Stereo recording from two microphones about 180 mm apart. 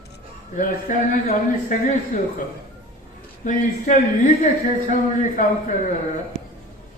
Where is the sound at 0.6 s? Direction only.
45° left (ahead or behind).